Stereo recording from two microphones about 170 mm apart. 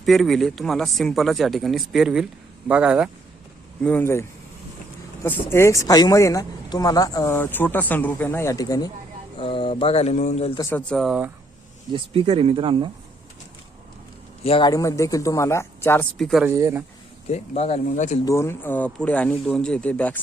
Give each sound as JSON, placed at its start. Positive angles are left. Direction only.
{"t": 0.0, "sound": "speech", "side_deg": 0}
{"t": 3.8, "sound": "speech", "side_deg": 10}
{"t": 9.4, "sound": "mantra", "side_deg": 30}
{"t": 10.6, "sound": "speech", "side_deg": 10}
{"t": 11.9, "sound": "speech", "side_deg": -35}
{"t": 14.4, "sound": "mantra", "side_deg": 35}
{"t": 14.7, "sound": "speech", "side_deg": 20}
{"t": 16.1, "sound": "speech", "side_deg": 0}
{"t": 16.6, "sound": "speech", "side_deg": -20}
{"t": 17.3, "sound": "mantra", "side_deg": 40}
{"t": 18.3, "sound": "speech", "side_deg": 15}